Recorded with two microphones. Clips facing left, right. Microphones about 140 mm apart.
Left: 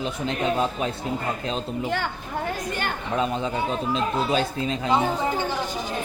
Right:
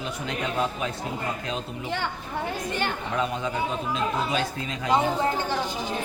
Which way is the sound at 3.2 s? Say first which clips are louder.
Left 2 dB; 30° left (ahead or behind).